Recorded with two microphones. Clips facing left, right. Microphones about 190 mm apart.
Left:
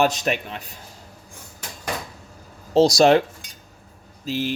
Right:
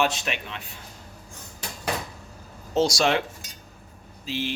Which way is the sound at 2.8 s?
35° left (ahead or behind).